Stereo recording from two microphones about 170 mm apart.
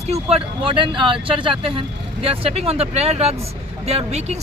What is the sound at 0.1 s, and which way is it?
Speech, 35° right (ahead or behind).